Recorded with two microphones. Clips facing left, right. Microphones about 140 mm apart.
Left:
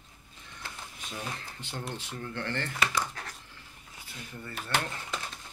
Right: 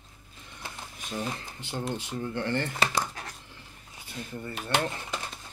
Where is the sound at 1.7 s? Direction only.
15° right (ahead or behind).